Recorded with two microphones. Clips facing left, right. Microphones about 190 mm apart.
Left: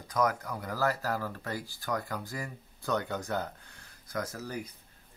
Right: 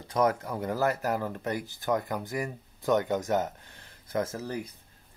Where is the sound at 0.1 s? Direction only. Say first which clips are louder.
Right 3 dB; 25° right (ahead or behind).